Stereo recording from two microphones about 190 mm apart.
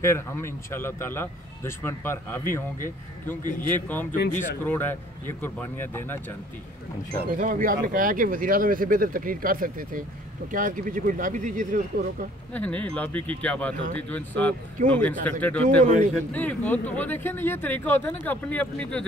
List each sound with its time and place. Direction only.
0.0 s speech: 15° left (ahead or behind)
3.6 s speech: 10° left (ahead or behind)
7.3 s speech: 45° right (ahead or behind)
12.5 s speech: 5° left (ahead or behind)